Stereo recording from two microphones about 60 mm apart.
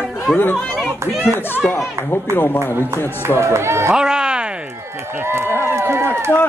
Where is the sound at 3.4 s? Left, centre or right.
Right.